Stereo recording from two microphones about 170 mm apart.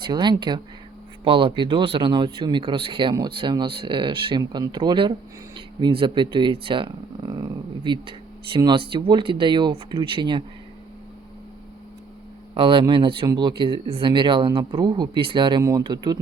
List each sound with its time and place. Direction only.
0.1 s speech: 25° right (ahead or behind)
12.5 s speech: 30° right (ahead or behind)